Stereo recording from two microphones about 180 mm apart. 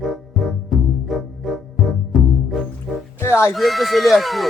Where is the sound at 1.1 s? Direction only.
Centre (ahead or behind).